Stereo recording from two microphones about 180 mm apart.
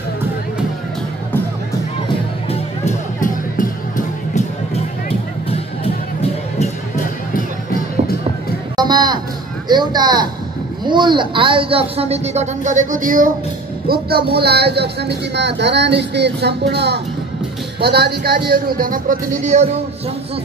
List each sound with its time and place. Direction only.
2.5 s music: 40° left (ahead or behind)
7.3 s music: 50° left (ahead or behind)
8.7 s music: 25° right (ahead or behind)
9.7 s a man's voice: 25° right (ahead or behind); by 13.3 s 50° right (ahead or behind)
13.8 s speech: 60° right (ahead or behind); by 19.7 s 40° right (ahead or behind)